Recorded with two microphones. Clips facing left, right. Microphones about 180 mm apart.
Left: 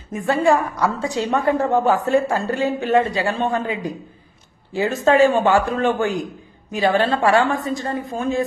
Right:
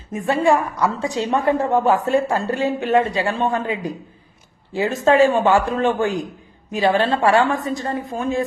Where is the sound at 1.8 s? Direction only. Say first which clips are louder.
Even; 25° right (ahead or behind).